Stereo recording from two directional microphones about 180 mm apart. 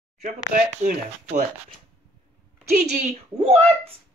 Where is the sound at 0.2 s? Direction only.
45° right (ahead or behind).